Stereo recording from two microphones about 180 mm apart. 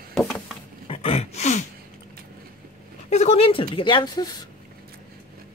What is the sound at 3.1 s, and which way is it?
Speech, 35° left (ahead or behind).